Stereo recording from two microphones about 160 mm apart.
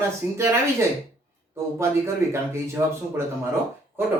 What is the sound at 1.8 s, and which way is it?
Speech, 15° right (ahead or behind).